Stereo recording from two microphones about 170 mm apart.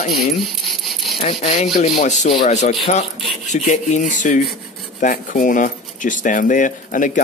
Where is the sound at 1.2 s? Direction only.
40° left (ahead or behind).